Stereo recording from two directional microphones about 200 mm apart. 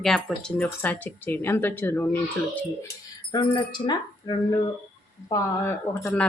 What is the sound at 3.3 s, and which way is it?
Speech, 25° left (ahead or behind).